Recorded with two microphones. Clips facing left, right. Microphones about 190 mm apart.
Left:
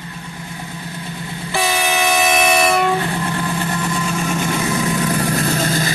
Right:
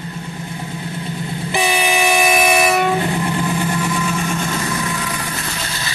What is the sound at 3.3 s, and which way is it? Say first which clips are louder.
Vehicle: right 2 dB; 15° right (ahead or behind).